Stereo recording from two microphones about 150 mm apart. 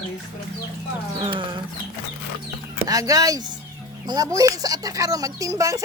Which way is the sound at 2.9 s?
25° right (ahead or behind).